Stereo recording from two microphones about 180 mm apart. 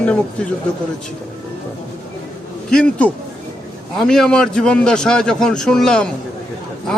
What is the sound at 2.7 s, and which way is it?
A man's voice, 5° left (ahead or behind).